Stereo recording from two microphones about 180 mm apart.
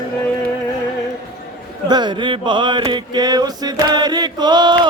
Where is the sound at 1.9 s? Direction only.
25° right (ahead or behind).